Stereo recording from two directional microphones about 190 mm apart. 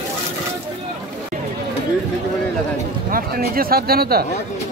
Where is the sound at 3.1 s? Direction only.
50° right (ahead or behind).